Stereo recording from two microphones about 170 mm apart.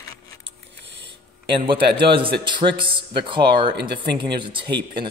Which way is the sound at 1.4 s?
30° right (ahead or behind).